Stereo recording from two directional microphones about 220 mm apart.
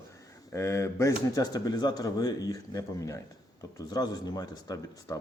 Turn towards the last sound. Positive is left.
turn(degrees=15)  # may be behind; listen again after turning